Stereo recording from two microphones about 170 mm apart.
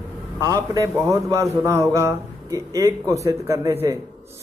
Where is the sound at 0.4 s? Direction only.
20° right (ahead or behind).